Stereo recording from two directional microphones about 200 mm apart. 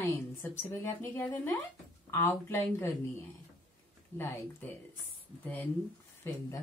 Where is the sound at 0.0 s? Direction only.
10° left (ahead or behind).